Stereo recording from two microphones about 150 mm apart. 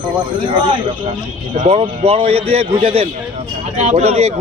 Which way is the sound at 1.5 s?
45° right (ahead or behind).